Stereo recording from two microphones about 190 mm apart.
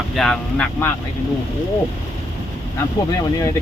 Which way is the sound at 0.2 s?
5° left (ahead or behind).